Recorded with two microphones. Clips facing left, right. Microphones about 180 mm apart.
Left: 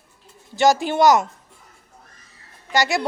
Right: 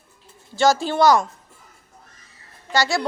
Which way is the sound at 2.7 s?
20° left (ahead or behind).